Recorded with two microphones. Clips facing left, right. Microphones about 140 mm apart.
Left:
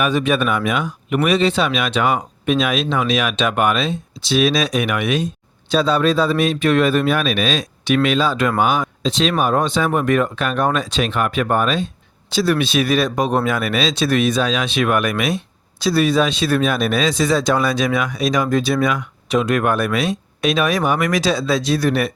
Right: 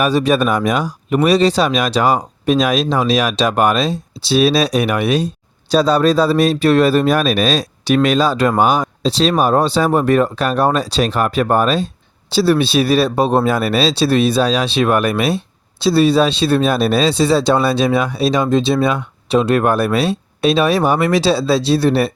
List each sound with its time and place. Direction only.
0.0 s speech: 35° right (ahead or behind)